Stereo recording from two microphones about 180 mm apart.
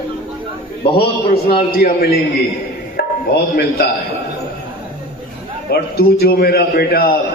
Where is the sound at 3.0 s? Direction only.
60° left (ahead or behind).